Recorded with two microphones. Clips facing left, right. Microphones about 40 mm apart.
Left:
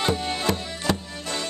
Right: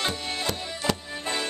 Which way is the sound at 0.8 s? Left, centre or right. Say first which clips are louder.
Left 1 dB; centre.